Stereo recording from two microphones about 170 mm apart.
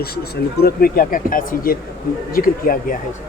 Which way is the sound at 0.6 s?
60° left (ahead or behind).